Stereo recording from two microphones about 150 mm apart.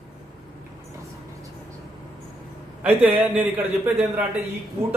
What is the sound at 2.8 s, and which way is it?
A man's voice, 10° right (ahead or behind).